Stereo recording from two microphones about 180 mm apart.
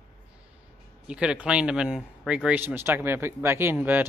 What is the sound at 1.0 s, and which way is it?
Speech, 5° right (ahead or behind).